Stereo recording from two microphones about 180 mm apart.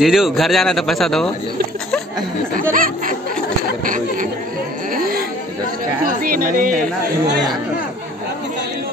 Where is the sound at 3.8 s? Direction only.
50° right (ahead or behind).